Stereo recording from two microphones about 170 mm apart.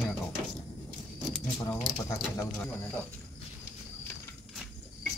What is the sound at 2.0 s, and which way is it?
Speech, 20° left (ahead or behind).